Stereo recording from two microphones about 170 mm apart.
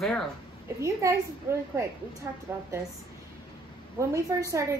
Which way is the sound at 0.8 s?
15° right (ahead or behind).